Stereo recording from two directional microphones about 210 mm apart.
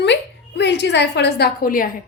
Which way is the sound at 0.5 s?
55° left (ahead or behind).